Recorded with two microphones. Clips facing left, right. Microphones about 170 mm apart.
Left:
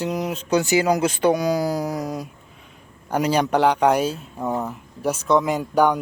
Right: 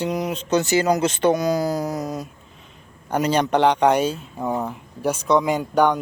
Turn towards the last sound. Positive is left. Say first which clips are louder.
# even
turn(degrees=5)  # may be behind; listen again after turning